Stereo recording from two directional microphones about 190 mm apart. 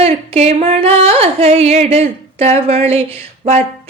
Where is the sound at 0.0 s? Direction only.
35° right (ahead or behind).